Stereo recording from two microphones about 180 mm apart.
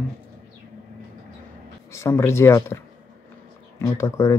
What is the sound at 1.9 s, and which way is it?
Speech, 15° left (ahead or behind).